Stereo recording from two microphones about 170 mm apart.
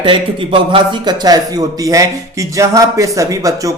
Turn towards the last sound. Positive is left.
turn(degrees=-20)  # may be behind; listen again after turning